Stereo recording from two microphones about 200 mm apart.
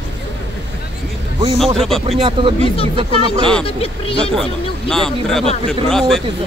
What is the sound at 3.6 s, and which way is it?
Speech, 30° left (ahead or behind).